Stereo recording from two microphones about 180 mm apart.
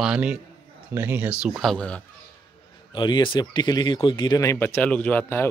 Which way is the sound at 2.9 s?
25° left (ahead or behind).